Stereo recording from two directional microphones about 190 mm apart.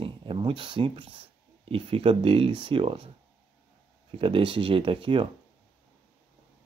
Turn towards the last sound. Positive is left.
turn(degrees=-25)  # may be behind; listen again after turning